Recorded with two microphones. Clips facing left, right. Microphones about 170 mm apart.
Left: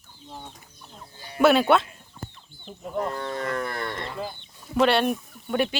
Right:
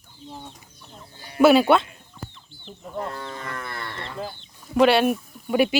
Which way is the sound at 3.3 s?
40° left (ahead or behind).